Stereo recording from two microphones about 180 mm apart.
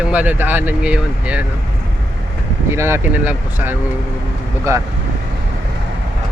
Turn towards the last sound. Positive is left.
turn(degrees=-15)  # may be behind; listen again after turning